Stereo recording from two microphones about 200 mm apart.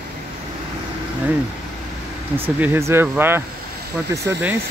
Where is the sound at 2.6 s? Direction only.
10° right (ahead or behind).